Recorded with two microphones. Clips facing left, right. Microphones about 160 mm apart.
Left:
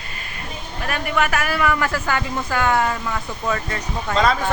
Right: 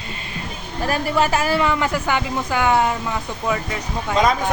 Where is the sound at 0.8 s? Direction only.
30° right (ahead or behind).